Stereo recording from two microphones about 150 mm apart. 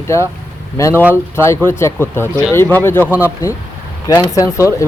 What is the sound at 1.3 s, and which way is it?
Speech, 15° left (ahead or behind).